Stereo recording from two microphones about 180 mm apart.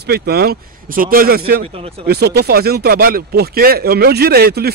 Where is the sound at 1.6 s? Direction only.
30° right (ahead or behind).